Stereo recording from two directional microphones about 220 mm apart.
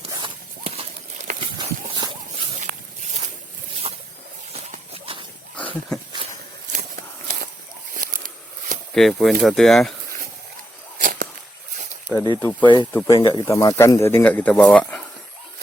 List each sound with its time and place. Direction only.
0.2 s a sound: 25° right (ahead or behind)
1.5 s dog: 20° right (ahead or behind)
2.6 s a sound: 30° right (ahead or behind)
5.5 s dog: 5° left (ahead or behind)
6.7 s walk: 40° right (ahead or behind)
7.9 s a sound: 40° right (ahead or behind)
9.0 s speech: centre (ahead or behind)
10.9 s whip: 40° right (ahead or behind)
12.4 s speech: 10° left (ahead or behind)
12.6 s speech: 20° left (ahead or behind)
12.9 s speech: 10° left (ahead or behind)
13.1 s speech: 25° left (ahead or behind); by 15.0 s 5° left (ahead or behind)